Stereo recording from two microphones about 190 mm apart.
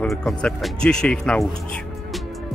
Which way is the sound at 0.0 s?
5° left (ahead or behind).